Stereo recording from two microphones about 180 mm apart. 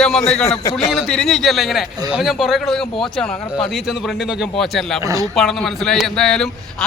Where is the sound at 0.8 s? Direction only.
Centre (ahead or behind).